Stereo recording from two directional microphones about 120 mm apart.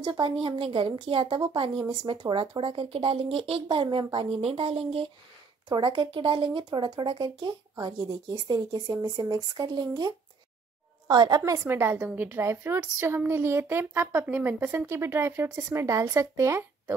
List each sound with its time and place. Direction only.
0.0 s speech: 45° right (ahead or behind)
5.7 s a woman's voice: 40° right (ahead or behind); by 16.9 s 25° right (ahead or behind)